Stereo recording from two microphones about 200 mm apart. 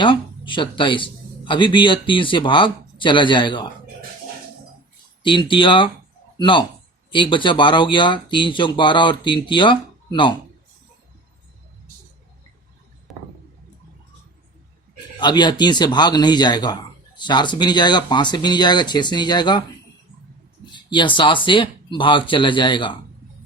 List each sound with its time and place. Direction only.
0.0 s a man's voice: 25° left (ahead or behind)
5.2 s speech: 25° left (ahead or behind)
13.1 s a sound: centre (ahead or behind)
15.2 s speech: 20° left (ahead or behind)
20.7 s a sound: 25° left (ahead or behind)
21.4 s speech: 25° left (ahead or behind)